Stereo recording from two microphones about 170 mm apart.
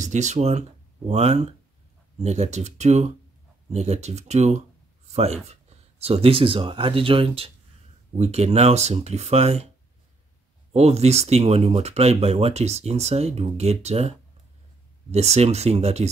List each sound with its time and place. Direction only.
0.0 s speech: 45° right (ahead or behind)
10.7 s speech: 40° right (ahead or behind)